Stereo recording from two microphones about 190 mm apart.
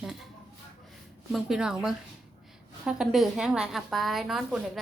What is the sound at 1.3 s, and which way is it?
A woman's voice, 5° right (ahead or behind).